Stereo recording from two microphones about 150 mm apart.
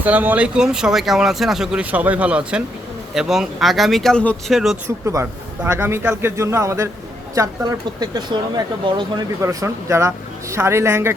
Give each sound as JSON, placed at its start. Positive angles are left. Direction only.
{"t": 0.0, "sound": "speech", "side_deg": -10}
{"t": 5.0, "sound": "speech", "side_deg": -20}